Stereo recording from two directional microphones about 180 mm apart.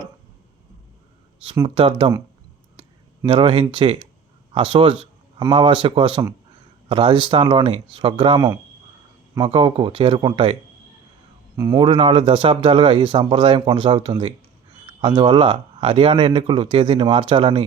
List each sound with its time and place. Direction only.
1.6 s speech: 30° right (ahead or behind)
3.2 s speech: 25° right (ahead or behind)
11.7 s speech: 30° right (ahead or behind)